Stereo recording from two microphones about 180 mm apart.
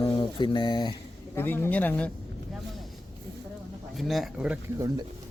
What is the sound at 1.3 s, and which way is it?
Speech, 10° left (ahead or behind).